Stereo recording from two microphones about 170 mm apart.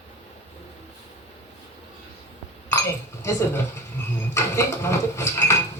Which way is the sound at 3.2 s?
15° left (ahead or behind).